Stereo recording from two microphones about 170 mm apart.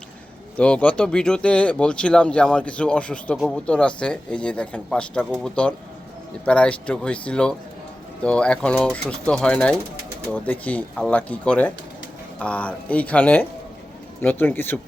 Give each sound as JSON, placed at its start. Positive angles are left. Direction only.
{"t": 0.5, "sound": "speech", "side_deg": 10}